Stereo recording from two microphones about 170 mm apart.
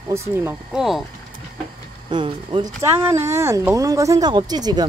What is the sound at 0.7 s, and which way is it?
Speech, centre (ahead or behind).